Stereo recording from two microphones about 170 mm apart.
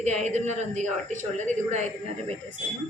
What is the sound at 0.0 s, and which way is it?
Speech, 45° right (ahead or behind).